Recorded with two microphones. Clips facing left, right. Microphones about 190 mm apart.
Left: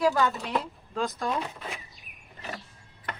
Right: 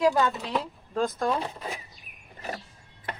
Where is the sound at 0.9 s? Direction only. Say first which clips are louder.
Right 4 dB; 45° right (ahead or behind).